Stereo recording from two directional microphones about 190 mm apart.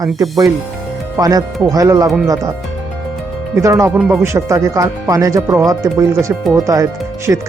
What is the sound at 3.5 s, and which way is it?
Speech, 15° right (ahead or behind).